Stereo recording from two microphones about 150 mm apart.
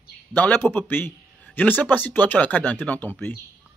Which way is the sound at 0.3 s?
10° left (ahead or behind).